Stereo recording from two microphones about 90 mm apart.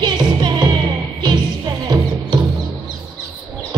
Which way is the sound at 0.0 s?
55° right (ahead or behind).